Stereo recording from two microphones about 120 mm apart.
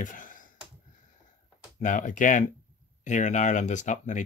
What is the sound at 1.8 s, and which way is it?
Speech, 90° left.